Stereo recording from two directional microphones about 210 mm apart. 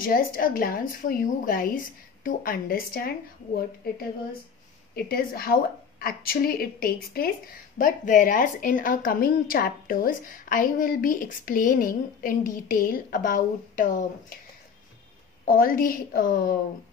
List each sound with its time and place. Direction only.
0.0 s a woman's voice: 45° left (ahead or behind)
4.9 s a woman's voice: 45° left (ahead or behind)
15.4 s a woman's voice: 40° left (ahead or behind)